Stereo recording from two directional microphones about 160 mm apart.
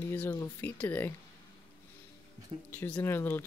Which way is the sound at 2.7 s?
10° left (ahead or behind).